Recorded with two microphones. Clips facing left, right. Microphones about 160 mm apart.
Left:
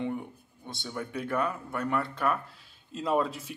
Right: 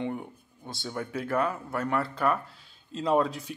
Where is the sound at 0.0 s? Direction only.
Centre (ahead or behind).